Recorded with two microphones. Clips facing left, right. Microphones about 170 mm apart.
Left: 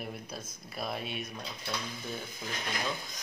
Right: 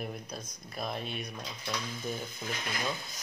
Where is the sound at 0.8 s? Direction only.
5° left (ahead or behind).